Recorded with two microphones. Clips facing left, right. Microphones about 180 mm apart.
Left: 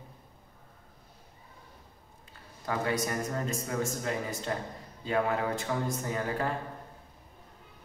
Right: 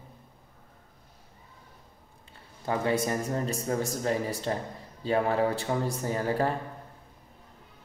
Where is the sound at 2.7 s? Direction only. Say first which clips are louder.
Right 4 dB; 30° right (ahead or behind).